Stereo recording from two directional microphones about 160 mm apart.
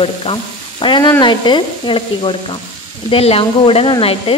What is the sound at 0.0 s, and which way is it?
Speech, 35° left (ahead or behind).